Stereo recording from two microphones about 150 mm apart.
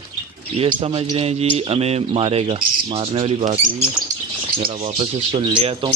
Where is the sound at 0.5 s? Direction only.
40° right (ahead or behind).